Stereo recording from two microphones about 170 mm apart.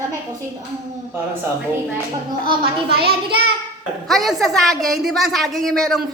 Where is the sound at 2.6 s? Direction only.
65° right (ahead or behind).